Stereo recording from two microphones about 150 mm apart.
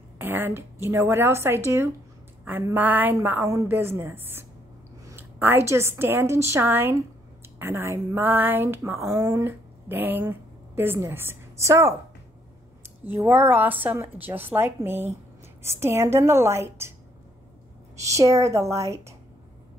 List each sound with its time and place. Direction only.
0.2 s a woman's voice: 15° right (ahead or behind)
13.0 s speech: 15° right (ahead or behind)
17.9 s a woman's voice: 20° right (ahead or behind)